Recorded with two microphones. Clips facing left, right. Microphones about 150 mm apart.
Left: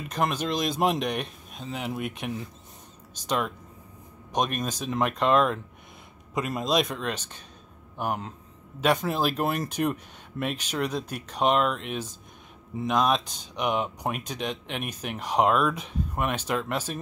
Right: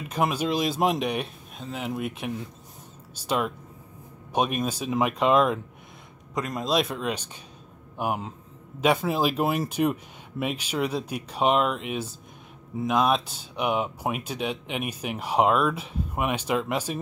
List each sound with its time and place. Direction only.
0.1 s speech: 10° right (ahead or behind)
6.3 s speech: 5° left (ahead or behind)